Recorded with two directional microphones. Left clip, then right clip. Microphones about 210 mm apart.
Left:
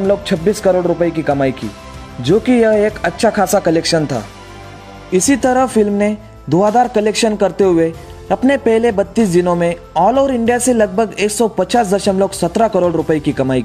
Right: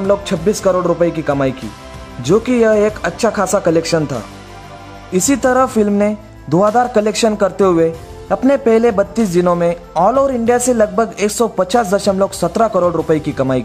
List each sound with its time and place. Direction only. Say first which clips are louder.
0.2 s a man's voice: left 1 dB; 5° left (ahead or behind)